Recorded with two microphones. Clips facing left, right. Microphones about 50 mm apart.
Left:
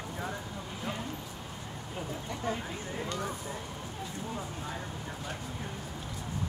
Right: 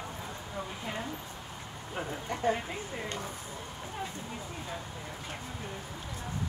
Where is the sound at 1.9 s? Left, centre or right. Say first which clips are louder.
Right 3 dB; right.